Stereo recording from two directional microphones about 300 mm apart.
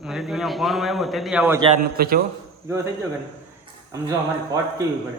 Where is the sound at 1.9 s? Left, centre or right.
Right.